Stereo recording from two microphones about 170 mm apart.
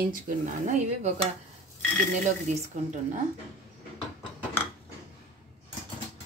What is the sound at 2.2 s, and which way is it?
Speech, 45° right (ahead or behind).